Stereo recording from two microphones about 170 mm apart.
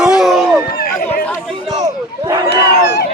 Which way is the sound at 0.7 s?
65° left (ahead or behind).